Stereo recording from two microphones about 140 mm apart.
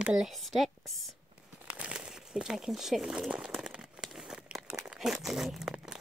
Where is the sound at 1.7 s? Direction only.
10° right (ahead or behind).